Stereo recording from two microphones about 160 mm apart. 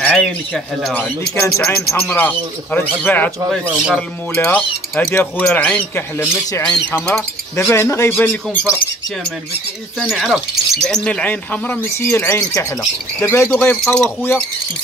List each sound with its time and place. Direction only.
0.0 s a sound: 5° left (ahead or behind)
0.8 s speech: 5° left (ahead or behind)
4.4 s speech: 15° left (ahead or behind)
9.9 s speech: centre (ahead or behind)